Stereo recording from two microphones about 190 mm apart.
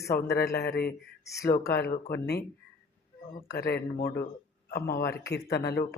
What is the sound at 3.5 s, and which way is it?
A man's voice, 60° left (ahead or behind).